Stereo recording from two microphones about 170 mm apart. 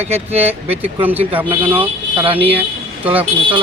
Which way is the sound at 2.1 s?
10° right (ahead or behind).